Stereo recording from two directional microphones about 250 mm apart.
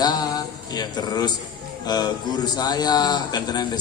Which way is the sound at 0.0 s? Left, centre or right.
Centre.